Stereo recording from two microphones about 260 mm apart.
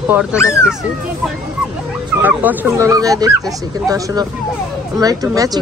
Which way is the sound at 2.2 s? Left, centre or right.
Centre.